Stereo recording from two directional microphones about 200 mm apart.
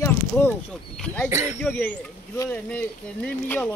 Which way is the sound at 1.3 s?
15° right (ahead or behind).